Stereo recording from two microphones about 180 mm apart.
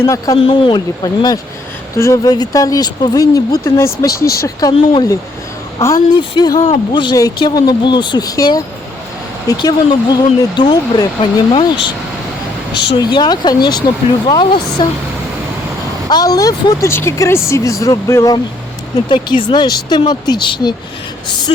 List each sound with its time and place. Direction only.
0.0 s speech: 15° left (ahead or behind)
0.3 s speech: 30° left (ahead or behind)
12.7 s speech: 70° left (ahead or behind)
13.0 s speech: 25° left (ahead or behind)
16.0 s speech: 20° left (ahead or behind)